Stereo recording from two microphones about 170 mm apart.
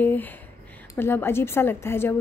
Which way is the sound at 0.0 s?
10° left (ahead or behind).